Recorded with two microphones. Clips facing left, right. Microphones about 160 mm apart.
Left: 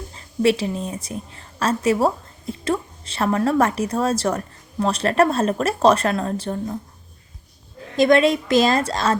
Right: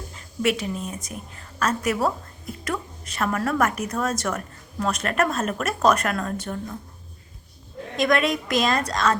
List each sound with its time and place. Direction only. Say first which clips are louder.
0.1 s a woman's voice: left 6 dB; 30° left (ahead or behind)
7.9 s a woman's voice: left 6 dB; 30° left (ahead or behind)